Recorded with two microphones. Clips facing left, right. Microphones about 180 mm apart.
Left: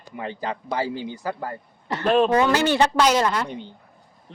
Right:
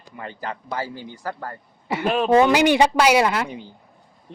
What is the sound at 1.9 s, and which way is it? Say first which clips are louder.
A man's voice: even; 10° right (ahead or behind).